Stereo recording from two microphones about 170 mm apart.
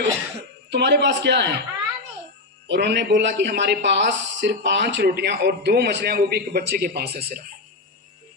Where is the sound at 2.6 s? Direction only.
90° right; by 7.5 s 60° right (ahead or behind).